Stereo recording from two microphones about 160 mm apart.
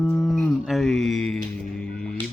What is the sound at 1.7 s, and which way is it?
Music, 5° left (ahead or behind).